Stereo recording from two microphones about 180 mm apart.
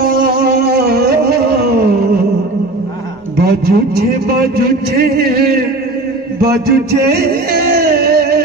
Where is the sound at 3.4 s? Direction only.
60° right (ahead or behind).